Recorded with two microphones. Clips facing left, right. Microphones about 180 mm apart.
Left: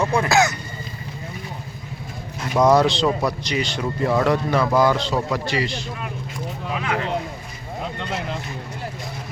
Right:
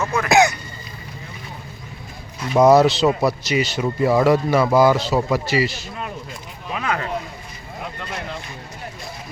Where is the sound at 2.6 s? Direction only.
5° right (ahead or behind).